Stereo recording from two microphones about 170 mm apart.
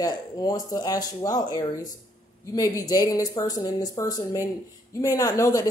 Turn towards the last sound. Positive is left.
turn(degrees=20)  # may be behind; listen again after turning